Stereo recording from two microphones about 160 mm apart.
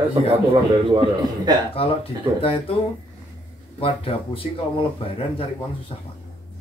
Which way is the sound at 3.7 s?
35° left (ahead or behind).